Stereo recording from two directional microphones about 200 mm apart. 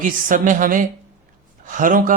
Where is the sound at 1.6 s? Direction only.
40° right (ahead or behind).